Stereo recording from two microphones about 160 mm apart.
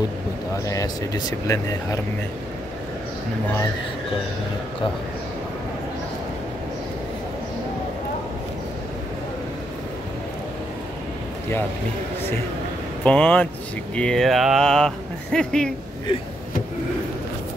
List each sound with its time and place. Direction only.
0.7 s speech: 20° left (ahead or behind)
13.0 s speech: 10° left (ahead or behind)